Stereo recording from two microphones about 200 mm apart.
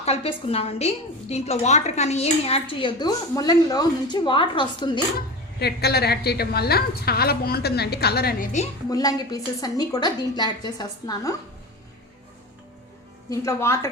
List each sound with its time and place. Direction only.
0.0 s a woman's voice: 30° left (ahead or behind)
5.5 s a woman's voice: 55° left (ahead or behind)
8.9 s a woman's voice: 20° left (ahead or behind)
13.3 s a woman's voice: 15° left (ahead or behind)